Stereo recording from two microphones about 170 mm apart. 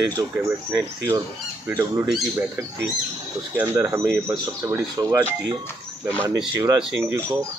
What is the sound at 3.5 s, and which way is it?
Speech, 15° right (ahead or behind).